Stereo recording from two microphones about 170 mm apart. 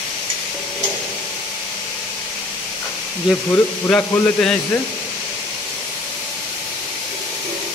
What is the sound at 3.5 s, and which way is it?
Speech, 10° left (ahead or behind).